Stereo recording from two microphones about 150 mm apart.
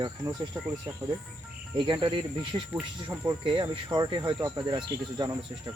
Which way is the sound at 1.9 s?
35° right (ahead or behind).